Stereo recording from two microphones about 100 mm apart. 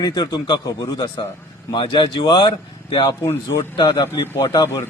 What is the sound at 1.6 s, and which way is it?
Speech, 55° left (ahead or behind).